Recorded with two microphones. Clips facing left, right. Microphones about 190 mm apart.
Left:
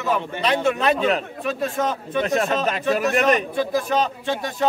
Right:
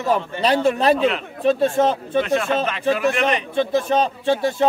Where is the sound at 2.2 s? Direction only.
40° left (ahead or behind).